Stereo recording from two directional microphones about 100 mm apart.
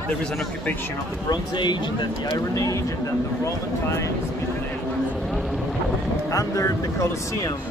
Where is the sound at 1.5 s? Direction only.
50° left (ahead or behind).